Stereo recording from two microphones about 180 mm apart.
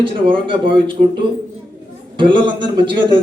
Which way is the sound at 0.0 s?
30° right (ahead or behind).